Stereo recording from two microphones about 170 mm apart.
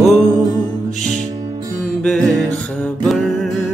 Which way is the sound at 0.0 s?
Centre (ahead or behind).